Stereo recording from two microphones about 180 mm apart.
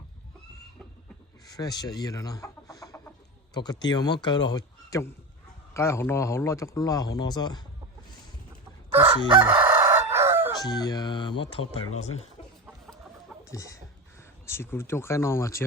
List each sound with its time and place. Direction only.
1.5 s speech: 20° left (ahead or behind)
8.9 s crowing: 10° right (ahead or behind)
10.6 s speech: 20° left (ahead or behind)
13.4 s chicken: 20° left (ahead or behind)
14.4 s speech: 15° left (ahead or behind)